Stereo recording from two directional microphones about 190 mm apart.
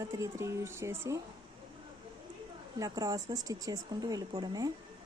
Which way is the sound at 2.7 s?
20° right (ahead or behind).